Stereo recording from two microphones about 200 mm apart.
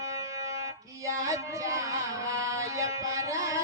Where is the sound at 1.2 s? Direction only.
15° right (ahead or behind).